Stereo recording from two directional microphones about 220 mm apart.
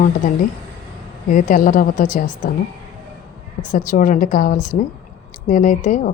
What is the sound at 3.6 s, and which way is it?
A woman's voice, 35° left (ahead or behind).